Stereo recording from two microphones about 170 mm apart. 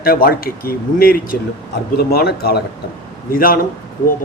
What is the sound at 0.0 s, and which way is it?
Speech, 60° left (ahead or behind).